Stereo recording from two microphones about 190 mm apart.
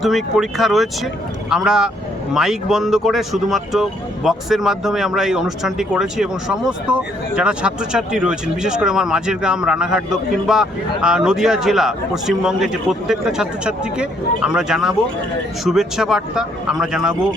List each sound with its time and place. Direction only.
0.0 s speech: centre (ahead or behind)